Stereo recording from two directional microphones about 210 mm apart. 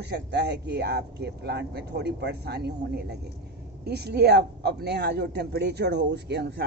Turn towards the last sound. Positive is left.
turn(degrees=-55)  # may be behind; listen again after turning